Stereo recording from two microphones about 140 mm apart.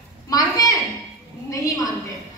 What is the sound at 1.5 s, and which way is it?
Speech, 25° left (ahead or behind).